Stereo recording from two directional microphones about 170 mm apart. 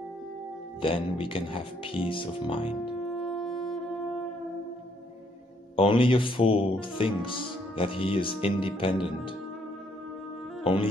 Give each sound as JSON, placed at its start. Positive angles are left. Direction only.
{"t": 0.8, "sound": "speech", "side_deg": 30}
{"t": 3.2, "sound": "music", "side_deg": 0}
{"t": 5.8, "sound": "speech", "side_deg": 30}
{"t": 10.6, "sound": "speech", "side_deg": 30}